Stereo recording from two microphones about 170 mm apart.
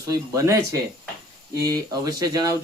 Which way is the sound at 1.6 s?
20° right (ahead or behind).